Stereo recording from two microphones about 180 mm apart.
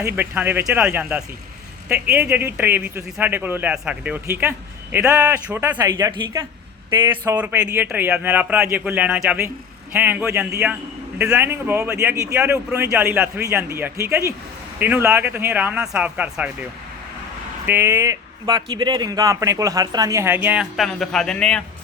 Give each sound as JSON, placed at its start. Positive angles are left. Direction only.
{"t": 0.0, "sound": "a man's voice", "side_deg": -10}
{"t": 17.7, "sound": "a man's voice", "side_deg": -10}